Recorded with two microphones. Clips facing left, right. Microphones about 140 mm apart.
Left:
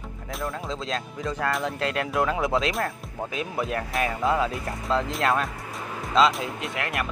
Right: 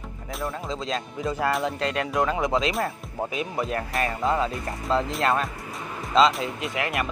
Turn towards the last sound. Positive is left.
turn(degrees=0)  # may be behind; listen again after turning